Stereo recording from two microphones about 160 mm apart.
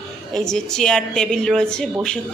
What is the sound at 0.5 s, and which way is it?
A woman's voice, 5° left (ahead or behind).